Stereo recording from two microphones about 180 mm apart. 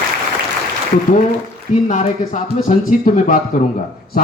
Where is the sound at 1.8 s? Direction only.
45° left (ahead or behind).